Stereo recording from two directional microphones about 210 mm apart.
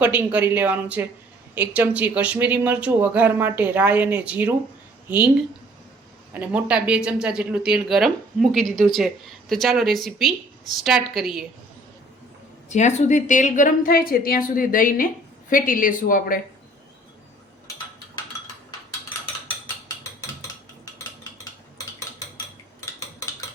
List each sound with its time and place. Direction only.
0.0 s speech: 5° right (ahead or behind)
6.3 s speech: 5° right (ahead or behind)
12.6 s a woman's voice: 35° left (ahead or behind)